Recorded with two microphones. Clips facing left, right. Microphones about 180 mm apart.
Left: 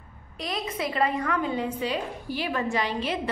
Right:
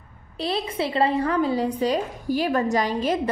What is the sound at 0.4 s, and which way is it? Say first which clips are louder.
A woman's voice: right 5 dB; 30° right (ahead or behind).